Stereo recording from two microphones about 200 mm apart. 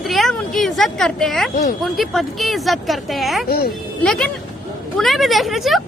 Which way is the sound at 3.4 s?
50° left (ahead or behind).